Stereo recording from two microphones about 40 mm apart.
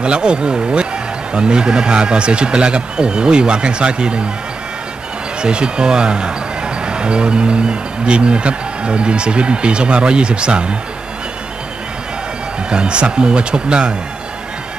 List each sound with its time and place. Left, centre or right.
0.0 s speech: right
5.4 s speech: right
12.6 s speech: right